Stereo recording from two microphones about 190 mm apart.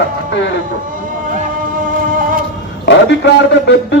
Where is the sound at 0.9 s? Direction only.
45° right (ahead or behind).